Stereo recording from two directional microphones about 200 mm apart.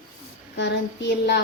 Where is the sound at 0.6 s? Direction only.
60° left (ahead or behind).